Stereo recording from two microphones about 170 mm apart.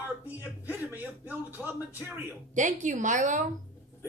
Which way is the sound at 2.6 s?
45° right (ahead or behind).